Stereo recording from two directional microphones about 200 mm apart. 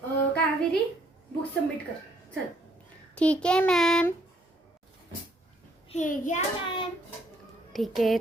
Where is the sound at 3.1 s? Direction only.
5° left (ahead or behind).